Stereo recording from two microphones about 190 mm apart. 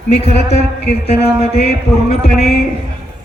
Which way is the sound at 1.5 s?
55° left (ahead or behind).